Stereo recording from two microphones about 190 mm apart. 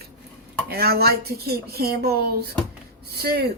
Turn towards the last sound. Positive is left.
turn(degrees=-55)  # may be behind; listen again after turning